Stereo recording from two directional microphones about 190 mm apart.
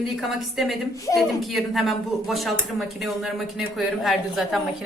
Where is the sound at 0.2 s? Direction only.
Centre (ahead or behind).